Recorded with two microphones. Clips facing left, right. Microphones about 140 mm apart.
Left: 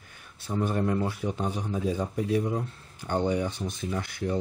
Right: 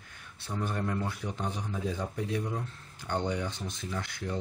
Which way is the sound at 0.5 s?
20° left (ahead or behind).